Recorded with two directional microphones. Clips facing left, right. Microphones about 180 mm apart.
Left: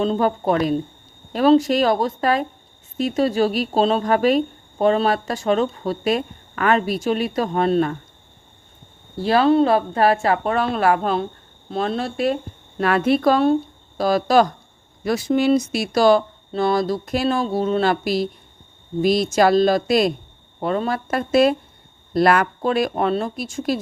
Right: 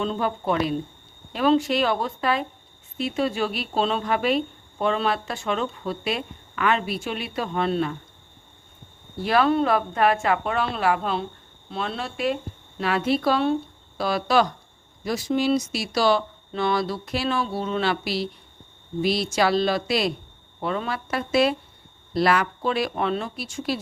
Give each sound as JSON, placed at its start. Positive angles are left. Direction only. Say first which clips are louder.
{"t": 0.0, "sound": "speech", "louder": "left 6 dB", "side_deg": 40}
{"t": 9.1, "sound": "a woman's voice", "louder": "left 5 dB", "side_deg": 30}
{"t": 15.0, "sound": "a woman's voice", "louder": "left 5 dB", "side_deg": 60}